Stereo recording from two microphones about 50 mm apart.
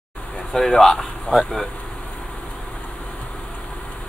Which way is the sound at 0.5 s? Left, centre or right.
Centre.